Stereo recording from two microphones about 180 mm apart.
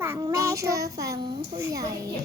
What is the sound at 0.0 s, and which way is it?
A child's voice, 15° right (ahead or behind).